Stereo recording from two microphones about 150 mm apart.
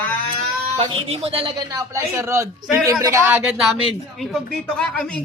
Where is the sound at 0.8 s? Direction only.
40° right (ahead or behind).